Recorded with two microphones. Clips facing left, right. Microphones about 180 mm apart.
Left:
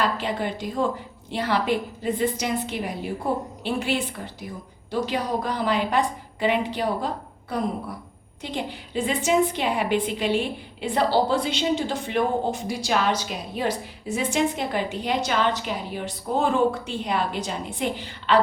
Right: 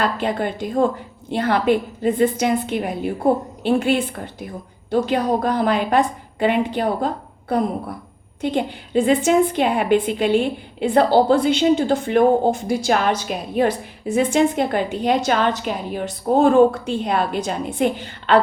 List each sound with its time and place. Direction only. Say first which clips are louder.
0.0 s a woman's voice: right 4 dB; 50° right (ahead or behind)